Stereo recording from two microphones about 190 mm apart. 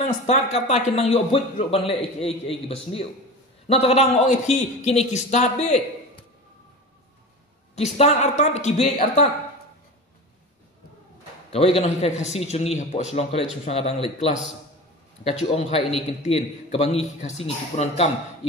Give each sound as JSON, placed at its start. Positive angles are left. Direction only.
{"t": 0.0, "sound": "a man's voice", "side_deg": 35}
{"t": 7.7, "sound": "a man's voice", "side_deg": 35}
{"t": 11.5, "sound": "a man's voice", "side_deg": 30}